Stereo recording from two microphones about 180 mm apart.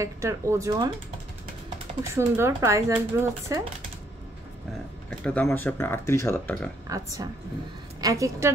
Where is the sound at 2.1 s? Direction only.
15° right (ahead or behind).